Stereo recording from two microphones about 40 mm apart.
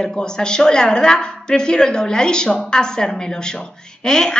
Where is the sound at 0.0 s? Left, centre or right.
Centre.